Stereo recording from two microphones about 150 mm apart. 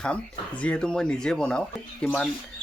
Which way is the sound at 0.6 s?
5° left (ahead or behind).